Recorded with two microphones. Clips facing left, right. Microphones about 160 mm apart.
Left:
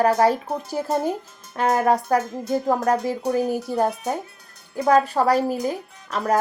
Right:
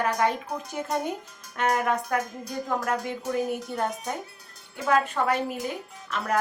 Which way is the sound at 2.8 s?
35° left (ahead or behind).